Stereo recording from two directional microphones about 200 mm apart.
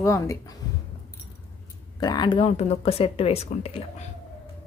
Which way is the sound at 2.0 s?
20° left (ahead or behind).